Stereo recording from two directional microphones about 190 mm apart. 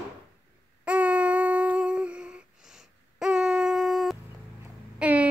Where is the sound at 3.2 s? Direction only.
Centre (ahead or behind).